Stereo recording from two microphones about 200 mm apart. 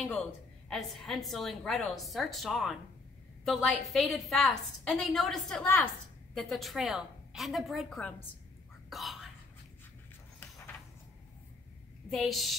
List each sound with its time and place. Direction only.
0.7 s a woman's voice: centre (ahead or behind)
12.1 s a woman's voice: centre (ahead or behind)